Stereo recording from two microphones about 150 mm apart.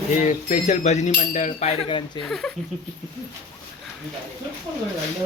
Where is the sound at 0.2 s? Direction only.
55° left (ahead or behind).